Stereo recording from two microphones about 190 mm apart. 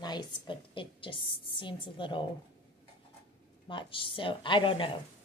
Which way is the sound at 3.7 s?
25° left (ahead or behind).